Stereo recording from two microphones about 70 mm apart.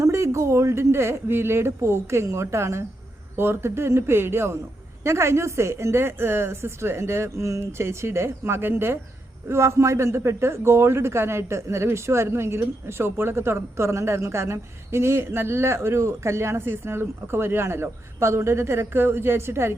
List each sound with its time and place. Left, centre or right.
0.0 s a man's voice: right